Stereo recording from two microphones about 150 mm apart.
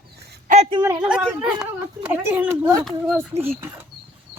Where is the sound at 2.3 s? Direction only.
10° right (ahead or behind).